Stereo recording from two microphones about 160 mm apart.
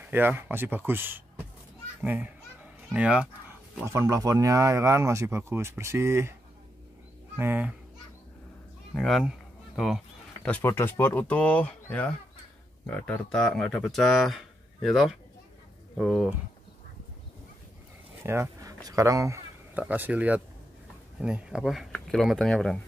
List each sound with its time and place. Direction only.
0.0 s speech: 10° right (ahead or behind)
7.3 s speech: 10° right (ahead or behind)
8.9 s speech: centre (ahead or behind)
9.8 s a sound: centre (ahead or behind)
10.5 s speech: 15° left (ahead or behind); by 16.3 s centre (ahead or behind)
18.2 s a sound: 15° right (ahead or behind)
19.8 s speech: 10° right (ahead or behind)